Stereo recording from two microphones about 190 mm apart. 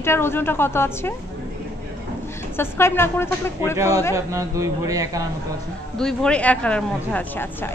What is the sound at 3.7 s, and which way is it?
Speech, 15° right (ahead or behind).